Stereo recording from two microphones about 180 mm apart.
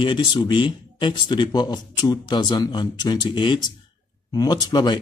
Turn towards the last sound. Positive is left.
turn(degrees=25)  # may be behind; listen again after turning